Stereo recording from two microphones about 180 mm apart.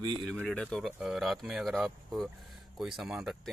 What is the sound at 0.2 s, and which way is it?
Speech, 5° left (ahead or behind).